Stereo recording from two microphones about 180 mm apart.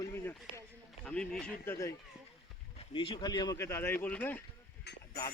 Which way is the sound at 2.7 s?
30° left (ahead or behind).